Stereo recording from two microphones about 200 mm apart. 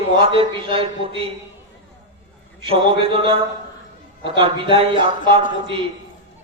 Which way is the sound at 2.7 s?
25° right (ahead or behind).